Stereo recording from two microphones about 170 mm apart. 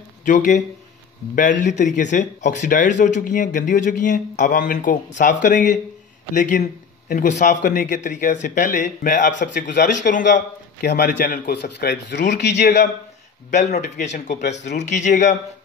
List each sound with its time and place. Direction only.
0.2 s speech: 45° left (ahead or behind)
10.9 s a man's voice: 70° left (ahead or behind)
11.5 s speech: 75° left (ahead or behind)
13.5 s speech: 45° left (ahead or behind)